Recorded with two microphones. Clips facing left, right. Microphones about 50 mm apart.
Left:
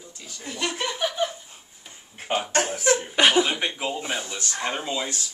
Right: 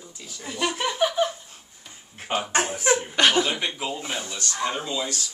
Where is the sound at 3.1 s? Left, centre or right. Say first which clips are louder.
Left 3 dB; centre.